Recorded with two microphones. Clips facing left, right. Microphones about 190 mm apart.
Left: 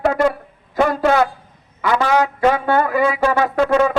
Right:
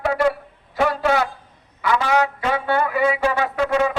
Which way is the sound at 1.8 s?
45° left (ahead or behind).